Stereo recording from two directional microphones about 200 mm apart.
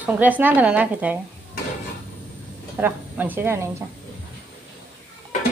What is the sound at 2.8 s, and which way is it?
Speech, 10° right (ahead or behind).